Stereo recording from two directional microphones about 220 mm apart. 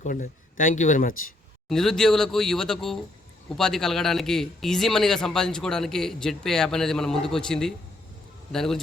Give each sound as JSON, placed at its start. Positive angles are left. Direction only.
{"t": 0.0, "sound": "speech", "side_deg": 35}
{"t": 1.7, "sound": "a man's voice", "side_deg": 0}